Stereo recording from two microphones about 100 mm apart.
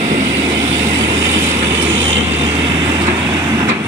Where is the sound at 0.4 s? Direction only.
35° right (ahead or behind).